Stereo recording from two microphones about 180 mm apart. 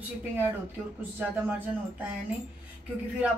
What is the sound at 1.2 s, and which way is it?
Speech, 10° right (ahead or behind).